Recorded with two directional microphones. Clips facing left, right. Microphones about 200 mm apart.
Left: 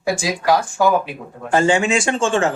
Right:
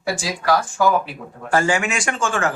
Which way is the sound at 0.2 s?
15° left (ahead or behind).